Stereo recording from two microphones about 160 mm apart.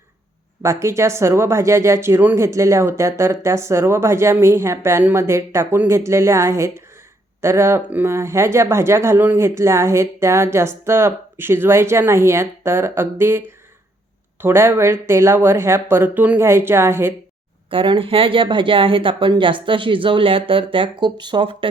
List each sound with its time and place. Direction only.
0.6 s speech: 15° right (ahead or behind)
14.4 s speech: 15° right (ahead or behind)
17.7 s speech: 30° right (ahead or behind)